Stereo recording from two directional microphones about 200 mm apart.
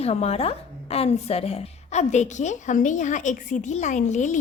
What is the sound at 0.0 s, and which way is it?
A woman's voice, 30° left (ahead or behind).